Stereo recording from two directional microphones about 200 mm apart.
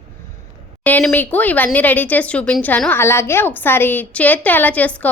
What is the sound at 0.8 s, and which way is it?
A woman's voice, 5° left (ahead or behind).